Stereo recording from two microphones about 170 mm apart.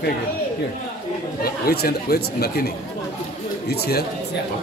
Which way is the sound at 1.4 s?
65° left (ahead or behind).